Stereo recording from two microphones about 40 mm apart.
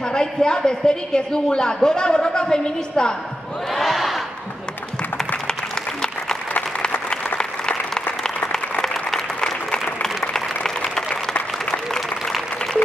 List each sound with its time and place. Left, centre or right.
0.0 s a man's voice: centre
3.7 s crowd: centre
7.3 s applause: left